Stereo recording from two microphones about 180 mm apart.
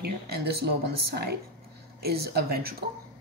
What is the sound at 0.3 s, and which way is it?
A woman's voice, 60° right (ahead or behind).